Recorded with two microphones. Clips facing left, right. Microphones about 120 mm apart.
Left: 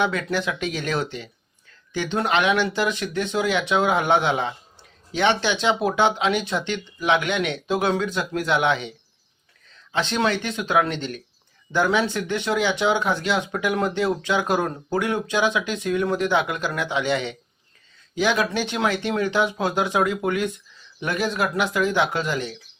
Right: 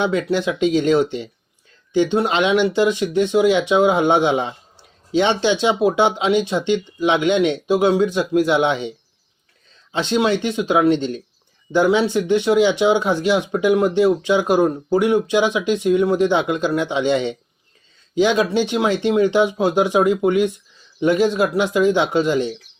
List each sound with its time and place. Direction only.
0.0 s speech: 20° right (ahead or behind)